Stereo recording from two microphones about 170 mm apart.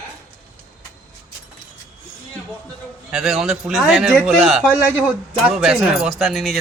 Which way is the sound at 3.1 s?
Centre (ahead or behind).